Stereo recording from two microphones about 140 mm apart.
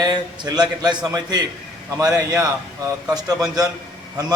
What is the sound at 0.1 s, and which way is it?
A man's voice, 30° right (ahead or behind).